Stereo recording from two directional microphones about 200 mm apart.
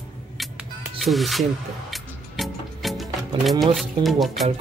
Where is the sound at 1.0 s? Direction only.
Centre (ahead or behind).